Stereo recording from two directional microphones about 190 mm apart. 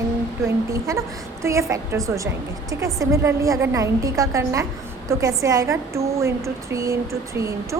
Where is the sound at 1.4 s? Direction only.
15° right (ahead or behind).